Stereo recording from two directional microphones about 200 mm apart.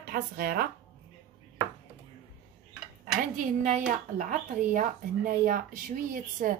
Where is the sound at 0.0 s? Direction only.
45° right (ahead or behind).